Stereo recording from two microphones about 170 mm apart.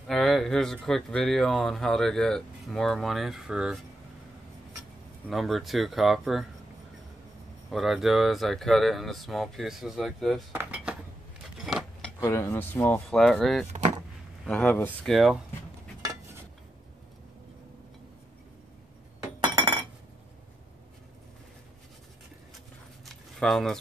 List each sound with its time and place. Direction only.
0.1 s speech: centre (ahead or behind)
5.3 s speech: centre (ahead or behind)
7.7 s speech: centre (ahead or behind)
10.5 s dishes: 10° right (ahead or behind)
11.6 s a sound: centre (ahead or behind)
12.2 s speech: 20° left (ahead or behind); by 13.7 s centre (ahead or behind)
13.7 s vehicle: 35° right (ahead or behind)
14.4 s speech: 10° left (ahead or behind)
19.4 s chink: 25° right (ahead or behind)
23.0 s a sound: centre (ahead or behind)